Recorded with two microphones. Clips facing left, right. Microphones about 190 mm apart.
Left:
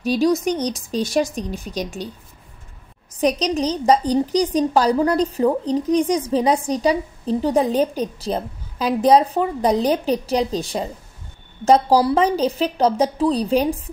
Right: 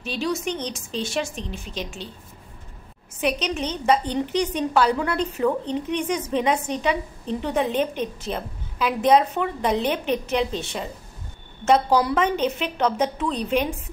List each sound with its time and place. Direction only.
0.0 s a woman's voice: 40° left (ahead or behind)
3.2 s a woman's voice: 40° left (ahead or behind)